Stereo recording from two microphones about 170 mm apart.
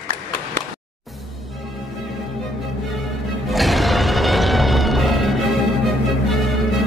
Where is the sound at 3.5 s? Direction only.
Centre (ahead or behind).